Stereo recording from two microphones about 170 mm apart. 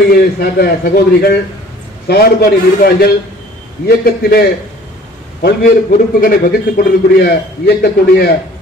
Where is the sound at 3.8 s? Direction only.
65° left (ahead or behind).